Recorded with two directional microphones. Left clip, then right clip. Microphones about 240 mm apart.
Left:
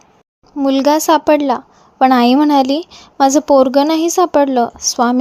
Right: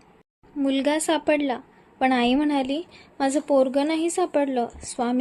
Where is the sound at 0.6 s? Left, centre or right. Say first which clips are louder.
Left 11 dB; left.